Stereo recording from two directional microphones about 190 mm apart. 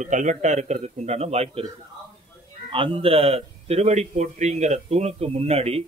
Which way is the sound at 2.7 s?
25° right (ahead or behind).